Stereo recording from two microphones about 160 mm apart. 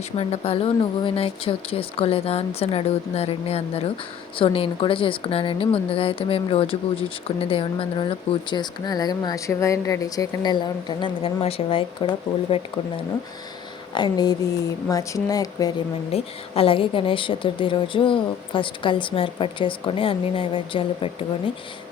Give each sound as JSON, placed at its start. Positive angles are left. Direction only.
{"t": 0.2, "sound": "speech", "side_deg": 40}
{"t": 13.9, "sound": "speech", "side_deg": 25}
{"t": 16.1, "sound": "speech", "side_deg": 35}